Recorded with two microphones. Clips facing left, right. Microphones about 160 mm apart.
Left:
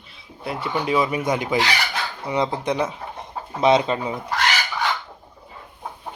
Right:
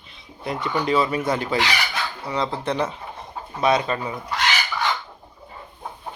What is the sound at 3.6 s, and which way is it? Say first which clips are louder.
Speech: left 3 dB; 20° left (ahead or behind).